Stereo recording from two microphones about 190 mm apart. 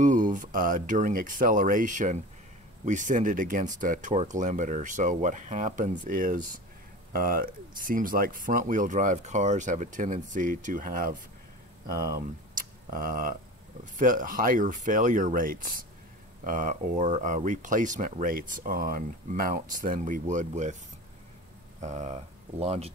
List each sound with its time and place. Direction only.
0.0 s speech: 45° right (ahead or behind)
21.8 s speech: 35° right (ahead or behind)